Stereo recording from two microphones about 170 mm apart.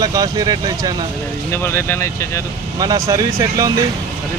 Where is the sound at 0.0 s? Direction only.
20° right (ahead or behind).